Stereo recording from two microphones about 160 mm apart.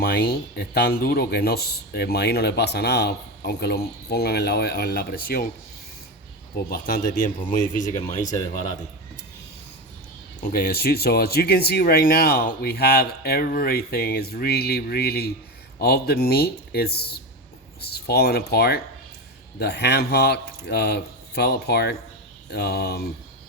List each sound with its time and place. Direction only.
0.0 s speech: 70° left (ahead or behind)
6.7 s speech: 70° left (ahead or behind); by 8.4 s 50° left (ahead or behind)
10.5 s speech: 70° left (ahead or behind)
19.5 s speech: 90° left